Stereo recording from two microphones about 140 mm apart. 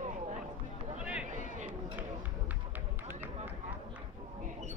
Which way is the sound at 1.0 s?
5° right (ahead or behind).